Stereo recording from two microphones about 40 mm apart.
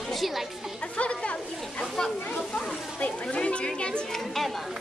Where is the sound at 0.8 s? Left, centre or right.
Left.